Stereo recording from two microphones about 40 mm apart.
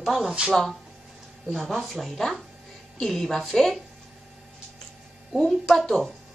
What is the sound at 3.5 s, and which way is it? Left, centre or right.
Speech, centre.